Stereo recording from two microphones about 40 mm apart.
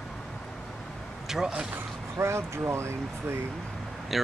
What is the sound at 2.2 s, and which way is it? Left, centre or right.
Speech, right.